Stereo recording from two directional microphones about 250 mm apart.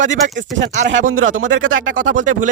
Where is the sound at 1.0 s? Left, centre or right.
Right.